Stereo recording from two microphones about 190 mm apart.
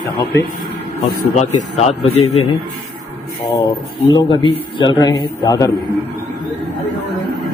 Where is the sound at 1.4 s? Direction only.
35° left (ahead or behind).